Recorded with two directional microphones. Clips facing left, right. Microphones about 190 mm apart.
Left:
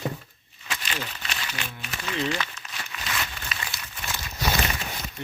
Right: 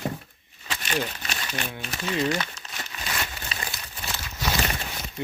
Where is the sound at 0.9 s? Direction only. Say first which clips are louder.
Right 8 dB; 45° right (ahead or behind).